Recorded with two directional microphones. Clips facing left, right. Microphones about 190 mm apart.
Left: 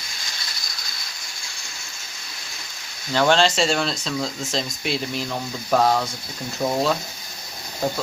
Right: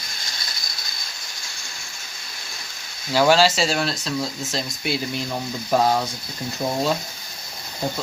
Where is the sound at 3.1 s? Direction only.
5° right (ahead or behind).